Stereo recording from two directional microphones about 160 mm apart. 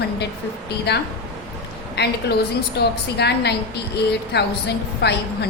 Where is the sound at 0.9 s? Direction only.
90° left.